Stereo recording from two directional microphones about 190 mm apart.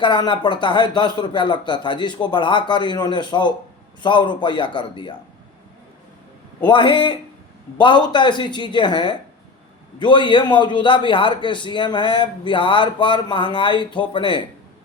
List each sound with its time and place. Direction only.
0.0 s a man's voice: 25° left (ahead or behind)
6.7 s a man's voice: 25° left (ahead or behind)